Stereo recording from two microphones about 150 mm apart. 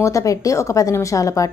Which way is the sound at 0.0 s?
20° left (ahead or behind).